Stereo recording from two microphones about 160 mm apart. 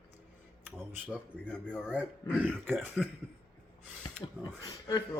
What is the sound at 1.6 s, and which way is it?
Speech, 5° right (ahead or behind).